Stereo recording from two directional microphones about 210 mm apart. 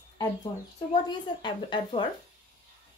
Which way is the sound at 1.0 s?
20° left (ahead or behind).